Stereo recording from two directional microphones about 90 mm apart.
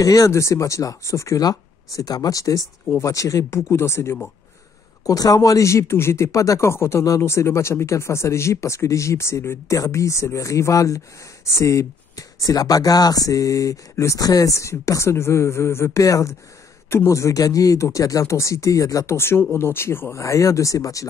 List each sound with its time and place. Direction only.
0.0 s speech: 40° left (ahead or behind)
5.0 s speech: 45° left (ahead or behind)